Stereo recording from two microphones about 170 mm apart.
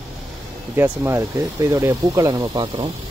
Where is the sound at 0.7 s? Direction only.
15° right (ahead or behind).